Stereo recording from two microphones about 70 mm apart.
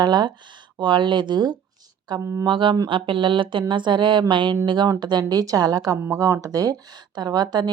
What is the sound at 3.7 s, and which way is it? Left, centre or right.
A woman's voice, right.